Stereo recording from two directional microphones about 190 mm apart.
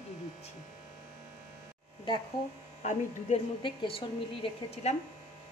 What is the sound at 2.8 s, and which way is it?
Speech, 40° left (ahead or behind).